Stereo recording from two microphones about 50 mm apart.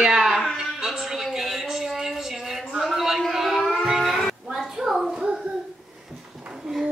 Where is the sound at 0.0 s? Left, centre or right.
Centre.